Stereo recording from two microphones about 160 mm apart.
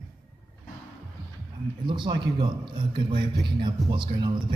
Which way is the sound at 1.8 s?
30° right (ahead or behind).